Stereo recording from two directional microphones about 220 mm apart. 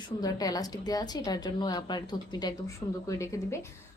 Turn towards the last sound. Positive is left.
turn(degrees=15)  # may be behind; listen again after turning